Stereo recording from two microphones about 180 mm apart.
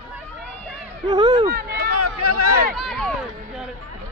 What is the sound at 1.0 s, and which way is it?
Speech, 20° right (ahead or behind).